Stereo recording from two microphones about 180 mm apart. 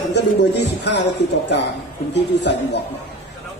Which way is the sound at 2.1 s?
70° left (ahead or behind).